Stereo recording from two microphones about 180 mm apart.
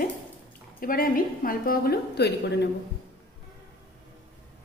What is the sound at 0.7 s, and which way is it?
A woman's voice, 50° left (ahead or behind).